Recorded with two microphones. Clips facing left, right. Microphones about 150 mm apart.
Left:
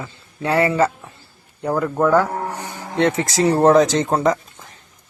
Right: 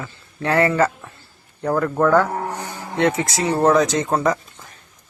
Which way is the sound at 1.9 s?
10° left (ahead or behind).